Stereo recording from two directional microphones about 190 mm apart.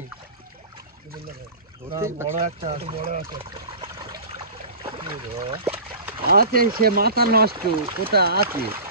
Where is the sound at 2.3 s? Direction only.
30° right (ahead or behind).